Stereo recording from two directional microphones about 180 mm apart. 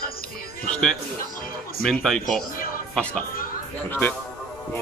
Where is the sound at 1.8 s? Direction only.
Centre (ahead or behind).